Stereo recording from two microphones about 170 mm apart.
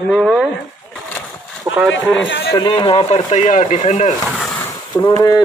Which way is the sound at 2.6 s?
25° left (ahead or behind).